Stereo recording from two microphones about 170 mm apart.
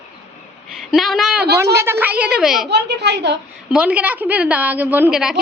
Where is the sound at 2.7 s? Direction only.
80° right.